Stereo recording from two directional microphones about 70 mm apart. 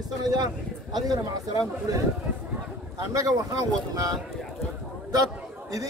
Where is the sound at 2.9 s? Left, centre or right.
Right.